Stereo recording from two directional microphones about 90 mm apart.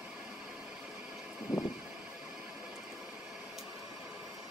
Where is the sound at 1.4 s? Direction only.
5° right (ahead or behind).